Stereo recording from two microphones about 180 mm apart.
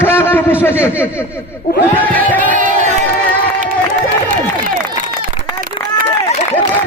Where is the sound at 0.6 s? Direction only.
10° left (ahead or behind).